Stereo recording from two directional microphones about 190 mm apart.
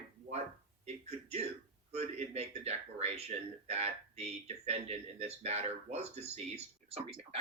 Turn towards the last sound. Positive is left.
turn(degrees=-30)  # may be behind; listen again after turning